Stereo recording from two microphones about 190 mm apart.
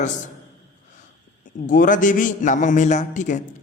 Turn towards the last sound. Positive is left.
turn(degrees=40)  # may be behind; listen again after turning